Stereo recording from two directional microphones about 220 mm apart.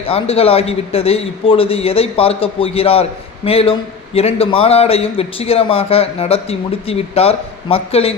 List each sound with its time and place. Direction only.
0.1 s a man's voice: 25° left (ahead or behind)